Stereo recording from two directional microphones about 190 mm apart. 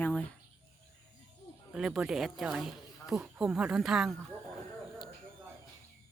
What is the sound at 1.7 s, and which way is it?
Speech, 5° right (ahead or behind).